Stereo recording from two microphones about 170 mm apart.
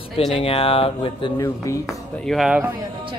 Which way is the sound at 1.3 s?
20° left (ahead or behind).